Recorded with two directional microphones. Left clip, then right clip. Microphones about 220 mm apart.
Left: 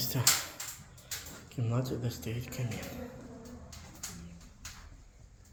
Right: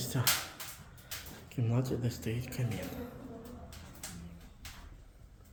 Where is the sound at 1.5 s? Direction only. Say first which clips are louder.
Right 1 dB; 20° right (ahead or behind).